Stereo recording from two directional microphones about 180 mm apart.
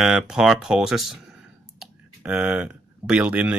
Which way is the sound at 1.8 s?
5° right (ahead or behind).